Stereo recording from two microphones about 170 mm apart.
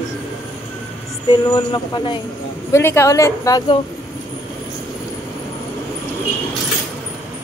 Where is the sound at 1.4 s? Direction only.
25° left (ahead or behind).